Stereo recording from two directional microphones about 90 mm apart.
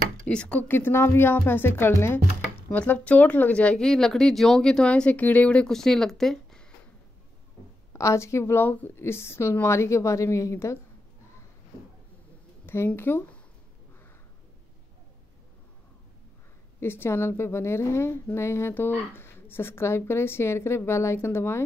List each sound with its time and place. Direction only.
0.3 s a woman's voice: 10° left (ahead or behind); by 2.1 s 25° left (ahead or behind)
2.7 s speech: 15° left (ahead or behind)
7.9 s speech: 35° left (ahead or behind)
12.6 s speech: 25° left (ahead or behind)
16.8 s a woman's voice: 25° left (ahead or behind)